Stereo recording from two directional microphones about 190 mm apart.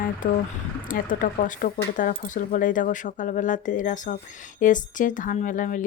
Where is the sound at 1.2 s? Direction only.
45° left (ahead or behind).